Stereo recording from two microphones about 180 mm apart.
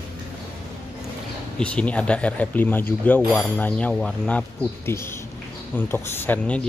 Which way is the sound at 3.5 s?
10° left (ahead or behind).